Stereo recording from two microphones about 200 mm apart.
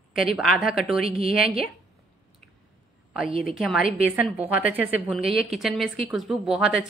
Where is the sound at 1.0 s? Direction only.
30° right (ahead or behind).